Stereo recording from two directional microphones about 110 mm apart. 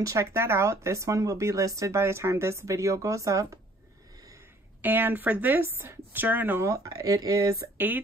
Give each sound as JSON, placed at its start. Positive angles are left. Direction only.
{"t": 0.0, "sound": "speech", "side_deg": -30}
{"t": 4.8, "sound": "speech", "side_deg": -15}
{"t": 6.7, "sound": "speech", "side_deg": -30}
{"t": 7.7, "sound": "speech", "side_deg": -15}